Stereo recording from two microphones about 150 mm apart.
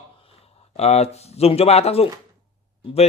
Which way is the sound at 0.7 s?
45° left (ahead or behind).